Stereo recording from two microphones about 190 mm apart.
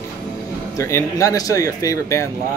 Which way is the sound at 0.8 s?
15° left (ahead or behind).